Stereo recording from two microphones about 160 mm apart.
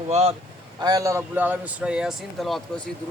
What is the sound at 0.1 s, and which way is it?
Speech, 40° right (ahead or behind).